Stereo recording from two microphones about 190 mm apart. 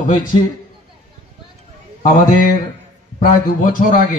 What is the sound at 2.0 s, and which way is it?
A man's voice, 45° left (ahead or behind).